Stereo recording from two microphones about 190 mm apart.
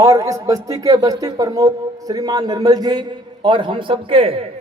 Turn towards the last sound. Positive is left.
turn(degrees=-30)  # may be behind; listen again after turning